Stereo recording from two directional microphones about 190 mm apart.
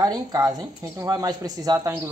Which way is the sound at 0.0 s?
20° right (ahead or behind).